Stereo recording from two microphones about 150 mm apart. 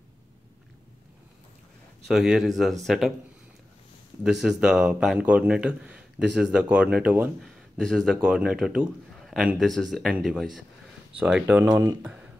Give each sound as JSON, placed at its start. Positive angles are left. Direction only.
{"t": 2.0, "sound": "a man's voice", "side_deg": 0}
{"t": 4.2, "sound": "a man's voice", "side_deg": -5}
{"t": 11.7, "sound": "speech", "side_deg": -25}